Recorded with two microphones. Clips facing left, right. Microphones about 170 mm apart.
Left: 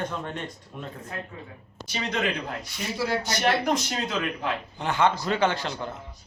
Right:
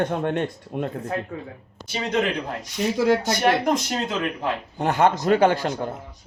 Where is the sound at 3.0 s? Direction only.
20° right (ahead or behind).